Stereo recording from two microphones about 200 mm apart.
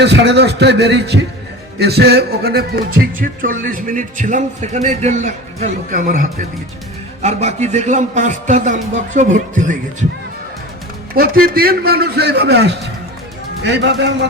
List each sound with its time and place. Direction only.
0.0 s a man's voice: 60° right (ahead or behind); by 9.7 s 40° right (ahead or behind)
11.1 s a man's voice: 50° right (ahead or behind)